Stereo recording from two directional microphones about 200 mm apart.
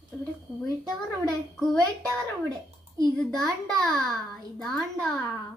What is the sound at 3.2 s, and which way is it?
A child's voice, centre (ahead or behind).